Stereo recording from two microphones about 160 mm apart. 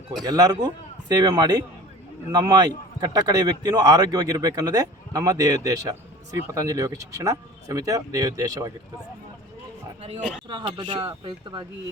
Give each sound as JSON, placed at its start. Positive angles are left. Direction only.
{"t": 0.2, "sound": "a man's voice", "side_deg": -25}
{"t": 10.0, "sound": "speech", "side_deg": -40}